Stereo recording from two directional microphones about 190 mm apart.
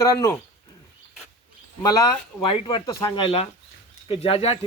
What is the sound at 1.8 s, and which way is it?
Speech, 20° left (ahead or behind).